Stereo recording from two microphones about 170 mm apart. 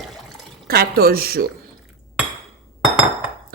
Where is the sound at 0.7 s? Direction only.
65° right (ahead or behind).